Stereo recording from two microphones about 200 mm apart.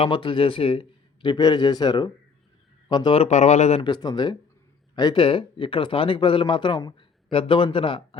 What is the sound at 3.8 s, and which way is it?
Speech, 20° left (ahead or behind).